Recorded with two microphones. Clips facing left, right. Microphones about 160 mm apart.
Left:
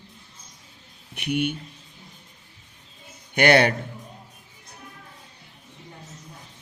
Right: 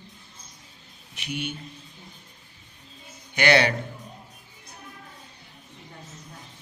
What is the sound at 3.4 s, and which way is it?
Speech, 55° left (ahead or behind).